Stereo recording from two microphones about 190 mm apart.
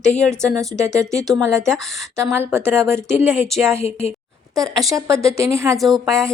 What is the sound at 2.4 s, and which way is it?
Speech, 10° right (ahead or behind).